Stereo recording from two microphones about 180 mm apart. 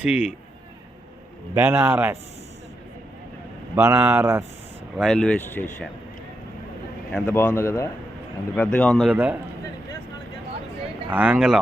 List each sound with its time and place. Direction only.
0.0 s speech: 5° right (ahead or behind)
1.5 s speech: 15° right (ahead or behind)
3.8 s speech: 15° right (ahead or behind)
4.9 s speech: 5° left (ahead or behind)
7.1 s speech: 10° left (ahead or behind); by 9.4 s 10° right (ahead or behind)
11.1 s speech: 5° right (ahead or behind)